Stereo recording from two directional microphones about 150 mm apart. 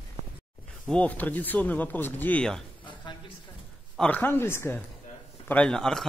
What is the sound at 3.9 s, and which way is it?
Speech, 10° left (ahead or behind).